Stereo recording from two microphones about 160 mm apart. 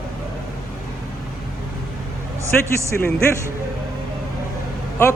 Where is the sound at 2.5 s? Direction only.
10° left (ahead or behind).